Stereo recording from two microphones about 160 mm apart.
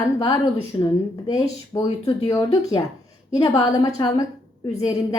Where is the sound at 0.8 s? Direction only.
25° left (ahead or behind).